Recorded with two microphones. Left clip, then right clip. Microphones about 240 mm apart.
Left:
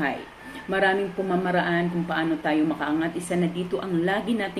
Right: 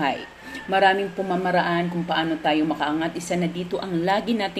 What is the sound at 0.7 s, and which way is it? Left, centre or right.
Speech, right.